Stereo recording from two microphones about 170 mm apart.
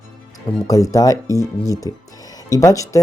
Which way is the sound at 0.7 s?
20° left (ahead or behind).